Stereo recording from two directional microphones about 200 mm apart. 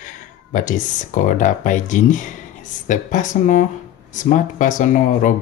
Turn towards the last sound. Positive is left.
turn(degrees=40)  # may be behind; listen again after turning